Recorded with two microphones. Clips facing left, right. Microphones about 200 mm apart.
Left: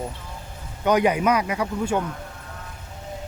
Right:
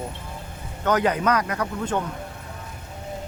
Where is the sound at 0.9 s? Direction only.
10° left (ahead or behind).